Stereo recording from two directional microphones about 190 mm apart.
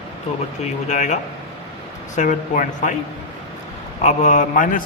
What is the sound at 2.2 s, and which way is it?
Speech, 40° left (ahead or behind).